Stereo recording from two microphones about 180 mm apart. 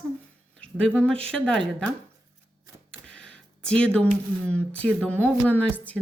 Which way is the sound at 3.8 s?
5° left (ahead or behind).